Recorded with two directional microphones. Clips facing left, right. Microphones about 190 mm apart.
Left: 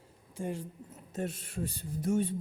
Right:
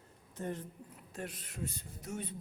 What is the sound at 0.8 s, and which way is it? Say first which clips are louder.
Speech: left 9 dB; 25° left (ahead or behind).